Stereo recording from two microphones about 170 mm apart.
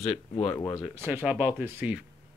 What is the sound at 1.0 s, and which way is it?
Speech, 10° right (ahead or behind).